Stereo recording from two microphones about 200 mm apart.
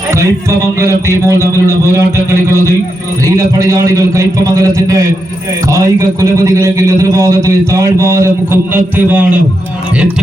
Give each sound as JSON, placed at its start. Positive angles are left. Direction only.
{"t": 0.1, "sound": "a man's voice", "side_deg": -15}